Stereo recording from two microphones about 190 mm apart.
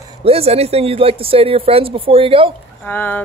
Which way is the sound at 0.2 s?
30° right (ahead or behind).